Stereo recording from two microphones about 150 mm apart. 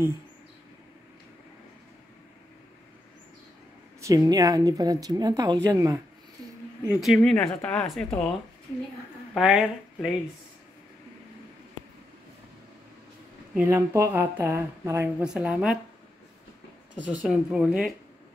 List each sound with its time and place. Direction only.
4.0 s speech: 20° right (ahead or behind)
6.9 s speech: centre (ahead or behind)
9.3 s speech: 5° right (ahead or behind)
13.6 s speech: 15° right (ahead or behind)
15.2 s speech: 5° right (ahead or behind)
17.0 s speech: 10° right (ahead or behind)